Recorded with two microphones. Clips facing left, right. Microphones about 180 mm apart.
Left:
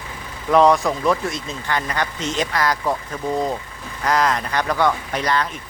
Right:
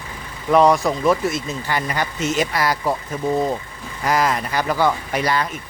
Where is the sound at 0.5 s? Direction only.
Centre (ahead or behind).